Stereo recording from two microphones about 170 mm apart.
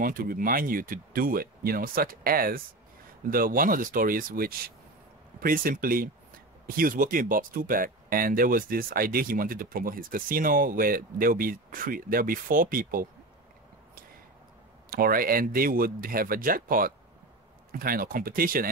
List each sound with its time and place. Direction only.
0.0 s speech: 55° right (ahead or behind)
14.9 s speech: 60° right (ahead or behind)